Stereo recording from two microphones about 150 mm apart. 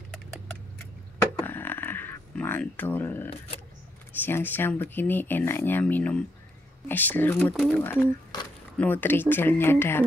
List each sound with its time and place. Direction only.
1.2 s a sound: 15° left (ahead or behind)
4.1 s speech: 15° left (ahead or behind)
8.3 s speech: 30° left (ahead or behind)
8.7 s speech: 10° left (ahead or behind)